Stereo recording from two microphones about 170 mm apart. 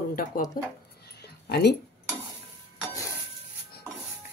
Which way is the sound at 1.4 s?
70° left (ahead or behind).